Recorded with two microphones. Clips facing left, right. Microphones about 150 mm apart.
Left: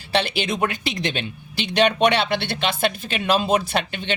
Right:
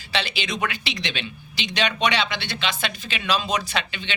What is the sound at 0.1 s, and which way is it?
Speech, 55° left (ahead or behind).